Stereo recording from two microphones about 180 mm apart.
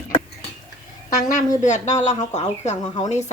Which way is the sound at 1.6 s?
40° left (ahead or behind).